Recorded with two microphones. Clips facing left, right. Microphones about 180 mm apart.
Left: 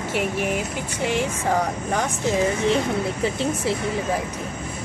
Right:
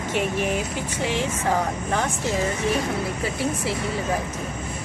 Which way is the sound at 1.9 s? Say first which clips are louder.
Left 2 dB; 15° left (ahead or behind).